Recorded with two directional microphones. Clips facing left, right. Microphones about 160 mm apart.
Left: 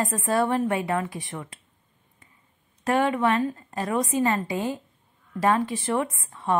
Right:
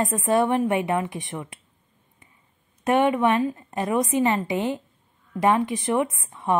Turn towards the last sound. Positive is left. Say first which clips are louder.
# right 2 dB
turn(degrees=-20)  # may be behind; listen again after turning